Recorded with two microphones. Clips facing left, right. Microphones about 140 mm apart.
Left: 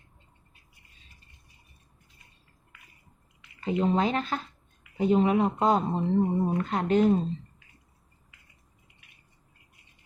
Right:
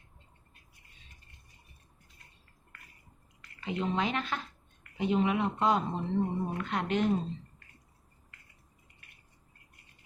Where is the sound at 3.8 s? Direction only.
40° left (ahead or behind).